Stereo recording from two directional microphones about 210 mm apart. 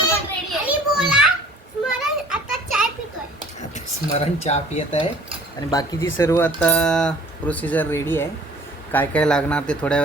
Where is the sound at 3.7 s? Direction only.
30° left (ahead or behind).